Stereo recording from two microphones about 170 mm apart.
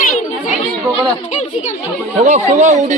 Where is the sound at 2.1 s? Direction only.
45° right (ahead or behind).